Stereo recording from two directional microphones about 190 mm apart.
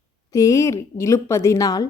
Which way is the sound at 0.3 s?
15° left (ahead or behind).